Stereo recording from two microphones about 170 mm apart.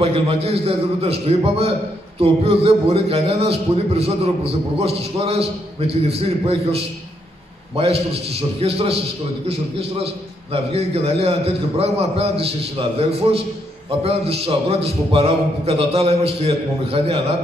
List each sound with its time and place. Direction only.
0.0 s a man's voice: 35° right (ahead or behind)
10.5 s a man's voice: 35° right (ahead or behind)